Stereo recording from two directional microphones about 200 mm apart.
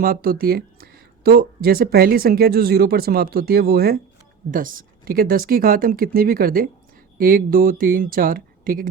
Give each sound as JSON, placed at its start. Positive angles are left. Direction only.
{"t": 0.0, "sound": "speech", "side_deg": -45}